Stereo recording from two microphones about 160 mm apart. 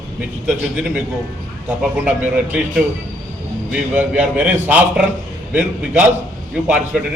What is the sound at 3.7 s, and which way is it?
A man's voice, 5° right (ahead or behind).